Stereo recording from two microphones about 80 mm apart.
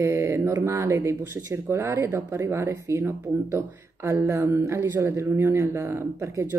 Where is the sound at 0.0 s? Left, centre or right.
Right.